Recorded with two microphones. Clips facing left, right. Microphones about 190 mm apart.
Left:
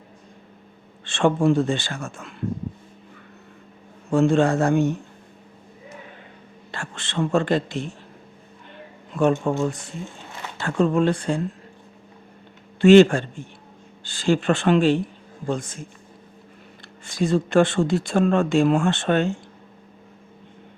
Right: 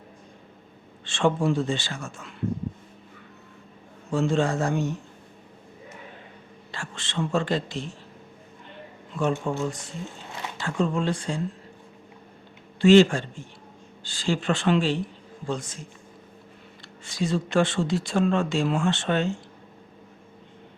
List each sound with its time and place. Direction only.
1.0 s speech: 55° left (ahead or behind)
4.1 s speech: 55° left (ahead or behind)
6.7 s speech: 55° left (ahead or behind)
9.5 s speech: 65° left (ahead or behind)
12.8 s speech: 60° left (ahead or behind)
17.1 s speech: 50° left (ahead or behind)